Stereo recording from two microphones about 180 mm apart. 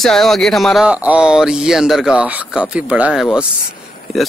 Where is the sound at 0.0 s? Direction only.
Centre (ahead or behind).